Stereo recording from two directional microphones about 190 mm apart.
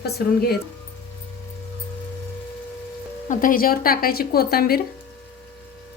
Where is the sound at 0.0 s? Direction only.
55° left (ahead or behind).